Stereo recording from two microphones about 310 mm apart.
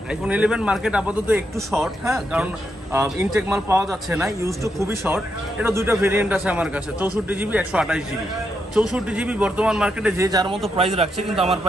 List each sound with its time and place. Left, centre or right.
0.1 s a man's voice: centre